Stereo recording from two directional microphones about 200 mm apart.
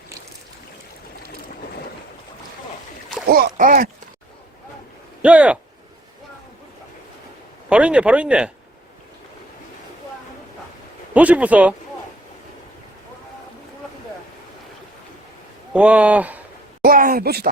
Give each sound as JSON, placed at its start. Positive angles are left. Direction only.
{"t": 3.2, "sound": "speech", "side_deg": -50}
{"t": 5.2, "sound": "speech", "side_deg": -5}
{"t": 7.7, "sound": "speech", "side_deg": -5}
{"t": 11.1, "sound": "speech", "side_deg": -5}
{"t": 15.7, "sound": "speech", "side_deg": -5}
{"t": 16.8, "sound": "speech", "side_deg": -45}